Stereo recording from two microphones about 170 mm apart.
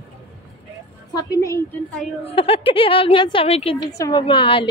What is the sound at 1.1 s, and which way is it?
Speech, 20° left (ahead or behind).